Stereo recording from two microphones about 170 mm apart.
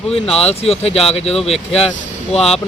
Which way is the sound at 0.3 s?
35° left (ahead or behind).